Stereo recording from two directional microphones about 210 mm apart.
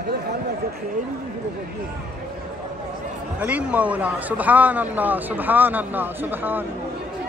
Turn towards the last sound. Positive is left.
turn(degrees=-10)  # may be behind; listen again after turning